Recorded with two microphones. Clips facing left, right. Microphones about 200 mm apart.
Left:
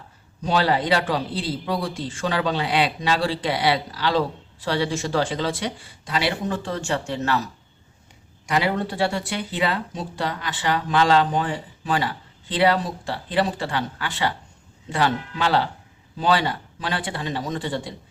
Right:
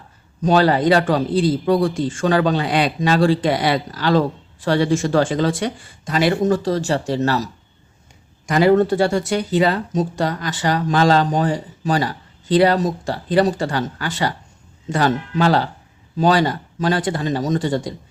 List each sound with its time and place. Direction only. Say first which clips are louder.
0.4 s a man's voice: right 6 dB; 45° right (ahead or behind)